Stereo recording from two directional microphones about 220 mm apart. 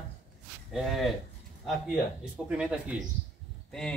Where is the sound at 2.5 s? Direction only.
5° right (ahead or behind).